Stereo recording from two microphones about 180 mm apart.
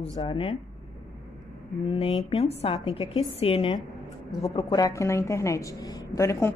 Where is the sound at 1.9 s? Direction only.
30° left (ahead or behind).